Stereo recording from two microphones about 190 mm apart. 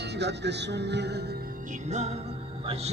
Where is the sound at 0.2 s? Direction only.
65° right (ahead or behind).